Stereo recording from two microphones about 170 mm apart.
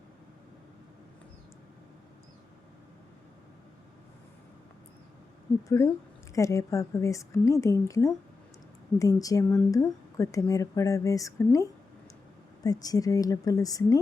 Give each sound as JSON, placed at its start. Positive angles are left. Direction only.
{"t": 5.6, "sound": "speech", "side_deg": 20}